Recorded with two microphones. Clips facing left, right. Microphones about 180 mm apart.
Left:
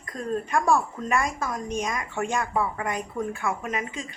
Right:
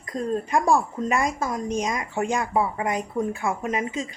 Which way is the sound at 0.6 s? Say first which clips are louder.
Right 2 dB; 30° right (ahead or behind).